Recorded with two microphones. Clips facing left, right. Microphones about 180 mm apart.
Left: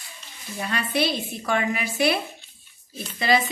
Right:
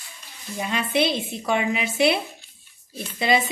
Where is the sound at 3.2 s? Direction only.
20° right (ahead or behind).